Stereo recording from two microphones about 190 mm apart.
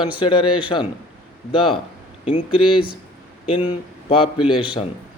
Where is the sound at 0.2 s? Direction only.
25° left (ahead or behind).